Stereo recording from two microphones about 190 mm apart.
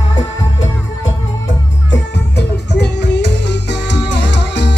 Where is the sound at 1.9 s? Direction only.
65° left (ahead or behind).